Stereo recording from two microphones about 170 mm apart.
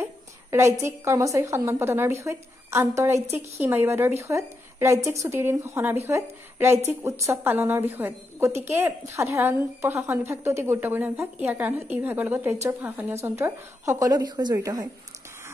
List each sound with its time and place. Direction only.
0.0 s a woman's voice: 15° right (ahead or behind)